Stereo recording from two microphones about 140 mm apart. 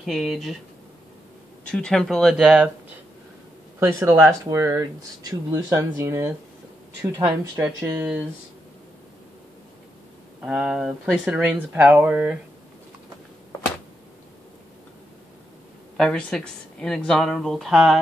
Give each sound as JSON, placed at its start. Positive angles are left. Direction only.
{"t": 0.0, "sound": "speech", "side_deg": 0}
{"t": 1.7, "sound": "speech", "side_deg": 5}
{"t": 3.8, "sound": "speech", "side_deg": -20}
{"t": 7.5, "sound": "speech", "side_deg": -10}
{"t": 10.4, "sound": "speech", "side_deg": -5}
{"t": 16.0, "sound": "speech", "side_deg": 5}